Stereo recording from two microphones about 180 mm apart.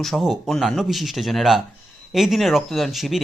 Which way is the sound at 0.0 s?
Centre (ahead or behind).